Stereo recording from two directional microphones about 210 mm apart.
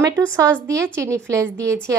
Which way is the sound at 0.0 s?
15° right (ahead or behind).